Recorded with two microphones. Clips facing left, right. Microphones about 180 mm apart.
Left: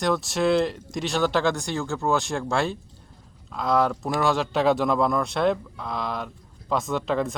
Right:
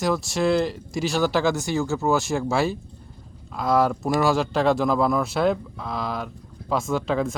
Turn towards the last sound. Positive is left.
turn(degrees=0)  # may be behind; listen again after turning